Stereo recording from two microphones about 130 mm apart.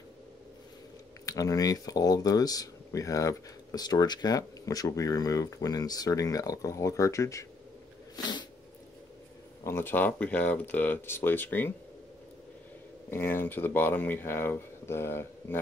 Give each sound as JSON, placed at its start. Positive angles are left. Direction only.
{"t": 1.2, "sound": "speech", "side_deg": 25}
{"t": 9.7, "sound": "speech", "side_deg": 15}
{"t": 13.1, "sound": "speech", "side_deg": 15}